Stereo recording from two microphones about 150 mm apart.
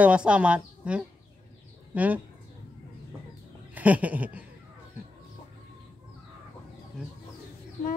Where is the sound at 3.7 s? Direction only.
10° right (ahead or behind).